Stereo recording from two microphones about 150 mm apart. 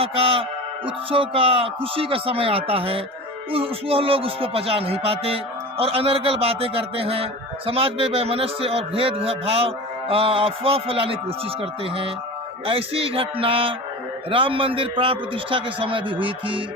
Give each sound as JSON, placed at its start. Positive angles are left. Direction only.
{"t": 0.0, "sound": "music", "side_deg": -40}